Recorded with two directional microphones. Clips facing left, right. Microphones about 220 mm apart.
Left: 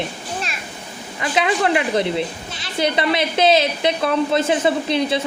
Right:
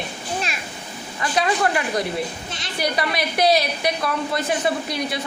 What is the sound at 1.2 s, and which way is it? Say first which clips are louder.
A woman's voice: left 2 dB; 20° left (ahead or behind).